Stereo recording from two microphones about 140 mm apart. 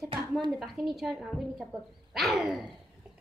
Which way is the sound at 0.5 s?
Centre (ahead or behind).